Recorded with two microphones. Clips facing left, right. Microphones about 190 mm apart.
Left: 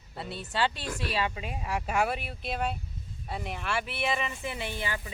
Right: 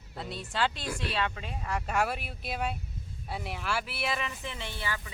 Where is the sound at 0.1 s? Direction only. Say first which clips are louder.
Left 1 dB; centre (ahead or behind).